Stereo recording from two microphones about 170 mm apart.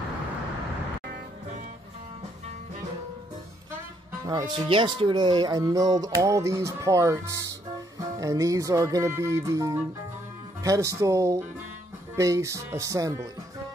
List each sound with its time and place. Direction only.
4.3 s speech: 25° right (ahead or behind)